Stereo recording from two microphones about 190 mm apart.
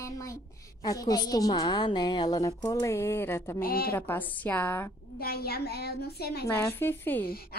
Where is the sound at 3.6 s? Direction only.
50° left (ahead or behind).